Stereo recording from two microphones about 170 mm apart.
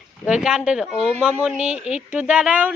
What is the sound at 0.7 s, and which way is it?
Speech, 5° right (ahead or behind).